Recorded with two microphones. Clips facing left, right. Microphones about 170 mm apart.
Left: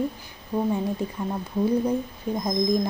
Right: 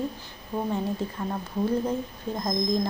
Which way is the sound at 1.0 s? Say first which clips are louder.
Left 2 dB; 15° left (ahead or behind).